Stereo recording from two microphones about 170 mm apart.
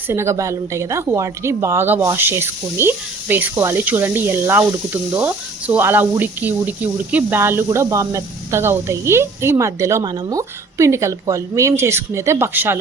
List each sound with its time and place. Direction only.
0.1 s speech: 15° right (ahead or behind)